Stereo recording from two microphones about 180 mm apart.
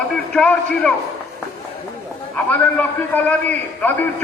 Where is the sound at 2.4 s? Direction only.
10° left (ahead or behind).